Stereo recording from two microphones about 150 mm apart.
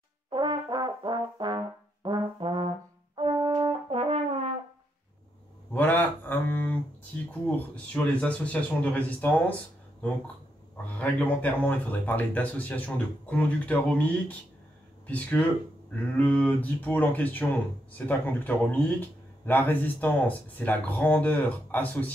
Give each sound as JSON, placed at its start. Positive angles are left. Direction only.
{"t": 0.3, "sound": "brass instrument", "side_deg": -30}
{"t": 5.7, "sound": "a sound", "side_deg": 10}
{"t": 7.4, "sound": "speech", "side_deg": 10}
{"t": 10.9, "sound": "speech", "side_deg": 10}